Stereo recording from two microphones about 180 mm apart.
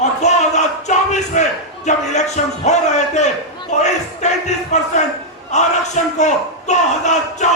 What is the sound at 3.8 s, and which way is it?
Crowd, 40° left (ahead or behind).